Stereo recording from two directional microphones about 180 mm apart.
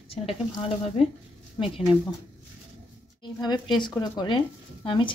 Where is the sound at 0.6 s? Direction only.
35° left (ahead or behind).